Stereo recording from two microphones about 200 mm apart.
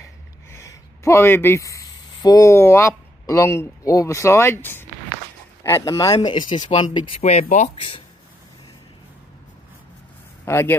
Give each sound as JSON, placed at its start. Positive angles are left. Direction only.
{"t": 0.5, "sound": "a man's voice", "side_deg": 15}
{"t": 10.4, "sound": "speech", "side_deg": 10}